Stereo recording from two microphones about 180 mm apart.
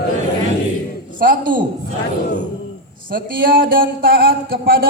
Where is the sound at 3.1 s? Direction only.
50° right (ahead or behind).